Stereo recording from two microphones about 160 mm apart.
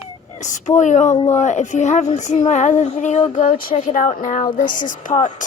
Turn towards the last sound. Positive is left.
turn(degrees=55)  # may be behind; listen again after turning